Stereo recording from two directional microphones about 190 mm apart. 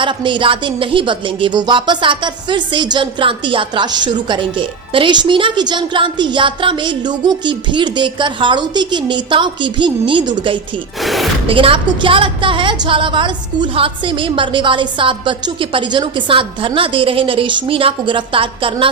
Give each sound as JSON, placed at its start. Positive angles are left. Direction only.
{"t": 0.0, "sound": "a woman's voice", "side_deg": -25}
{"t": 11.0, "sound": "speech", "side_deg": 0}
{"t": 11.4, "sound": "a woman's voice", "side_deg": -30}